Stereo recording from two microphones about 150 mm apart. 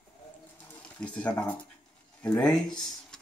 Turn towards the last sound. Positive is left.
turn(degrees=5)  # may be behind; listen again after turning